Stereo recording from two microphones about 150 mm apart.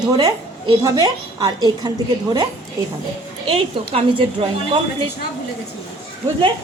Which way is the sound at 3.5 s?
35° right (ahead or behind).